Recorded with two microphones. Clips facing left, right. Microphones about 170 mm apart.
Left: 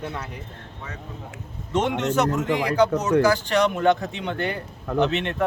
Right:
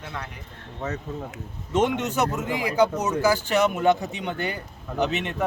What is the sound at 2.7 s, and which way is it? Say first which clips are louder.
Speech: left 3 dB; 10° right (ahead or behind).